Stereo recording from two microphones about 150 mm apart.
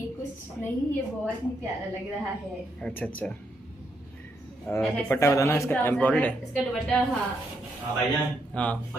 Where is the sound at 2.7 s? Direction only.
10° left (ahead or behind).